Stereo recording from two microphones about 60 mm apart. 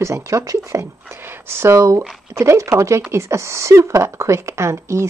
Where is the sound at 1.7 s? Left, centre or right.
Right.